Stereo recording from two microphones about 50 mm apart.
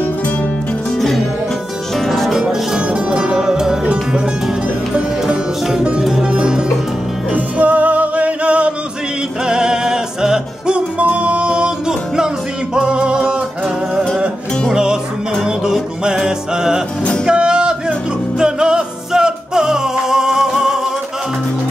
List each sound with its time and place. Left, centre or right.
0.9 s music: centre
2.9 s music: centre
5.2 s music: centre
7.3 s music: right; by 10.8 s centre
11.0 s music: right
12.7 s music: centre
14.7 s music: centre